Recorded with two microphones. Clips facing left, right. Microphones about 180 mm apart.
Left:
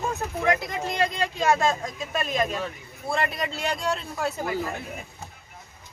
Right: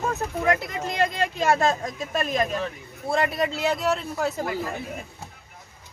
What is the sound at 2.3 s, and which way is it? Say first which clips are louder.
Speech: right 1 dB; centre (ahead or behind).